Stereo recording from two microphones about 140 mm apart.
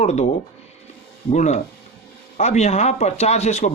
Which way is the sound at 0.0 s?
50° left (ahead or behind).